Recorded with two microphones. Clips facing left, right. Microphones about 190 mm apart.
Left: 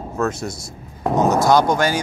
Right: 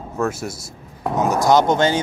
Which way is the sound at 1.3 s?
20° right (ahead or behind).